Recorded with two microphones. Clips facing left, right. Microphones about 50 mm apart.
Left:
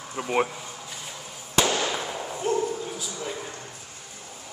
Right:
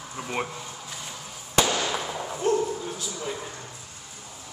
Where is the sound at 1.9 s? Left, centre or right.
Centre.